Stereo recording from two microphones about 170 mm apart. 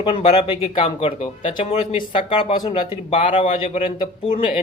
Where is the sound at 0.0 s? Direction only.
30° left (ahead or behind).